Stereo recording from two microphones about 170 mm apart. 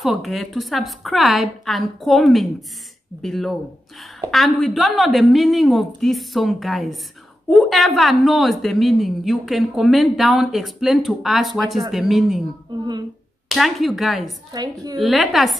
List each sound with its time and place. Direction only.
0.0 s a woman's voice: centre (ahead or behind)
13.5 s a woman's voice: centre (ahead or behind)
14.5 s a woman's voice: 20° right (ahead or behind)
15.0 s a woman's voice: centre (ahead or behind)